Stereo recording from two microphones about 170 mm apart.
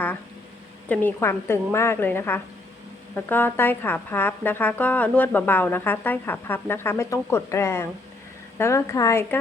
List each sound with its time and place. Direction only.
0.9 s speech: 15° left (ahead or behind)